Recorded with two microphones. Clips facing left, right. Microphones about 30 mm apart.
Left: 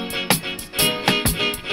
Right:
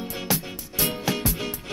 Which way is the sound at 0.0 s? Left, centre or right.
Left.